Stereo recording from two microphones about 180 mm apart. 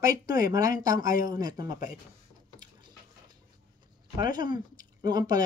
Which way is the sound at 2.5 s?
25° right (ahead or behind).